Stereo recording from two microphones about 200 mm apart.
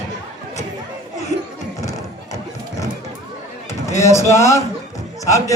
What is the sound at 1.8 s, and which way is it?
Music, 15° left (ahead or behind).